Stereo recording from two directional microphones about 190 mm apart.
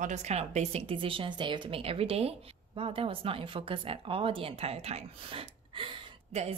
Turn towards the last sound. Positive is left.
turn(degrees=-30)  # may be behind; listen again after turning